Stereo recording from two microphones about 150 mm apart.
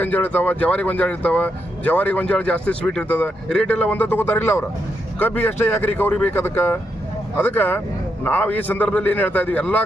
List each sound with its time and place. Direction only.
0.0 s speech: 10° left (ahead or behind)